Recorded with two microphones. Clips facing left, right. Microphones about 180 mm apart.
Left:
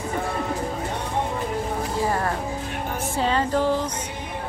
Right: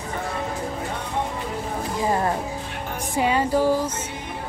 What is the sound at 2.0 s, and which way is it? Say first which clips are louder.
Music: right 3 dB; 20° right (ahead or behind).